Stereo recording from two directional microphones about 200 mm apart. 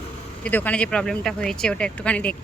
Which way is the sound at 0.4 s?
5° left (ahead or behind).